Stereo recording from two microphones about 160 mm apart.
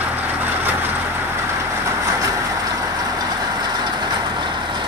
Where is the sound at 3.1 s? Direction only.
25° right (ahead or behind).